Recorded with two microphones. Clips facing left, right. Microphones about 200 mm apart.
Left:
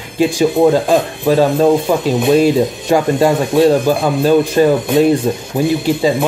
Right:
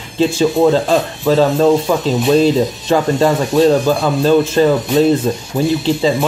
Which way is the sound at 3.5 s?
55° left (ahead or behind).